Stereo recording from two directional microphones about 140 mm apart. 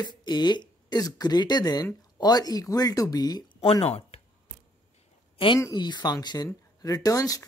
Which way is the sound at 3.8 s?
45° left (ahead or behind).